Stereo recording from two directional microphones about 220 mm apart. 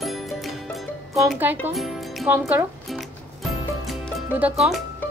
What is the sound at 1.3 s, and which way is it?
Speech, 10° right (ahead or behind).